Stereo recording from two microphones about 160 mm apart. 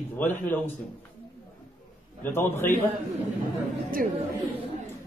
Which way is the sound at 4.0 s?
60° right (ahead or behind).